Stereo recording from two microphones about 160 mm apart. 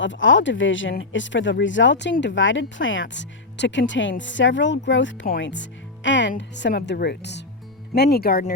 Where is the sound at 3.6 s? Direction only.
90° left.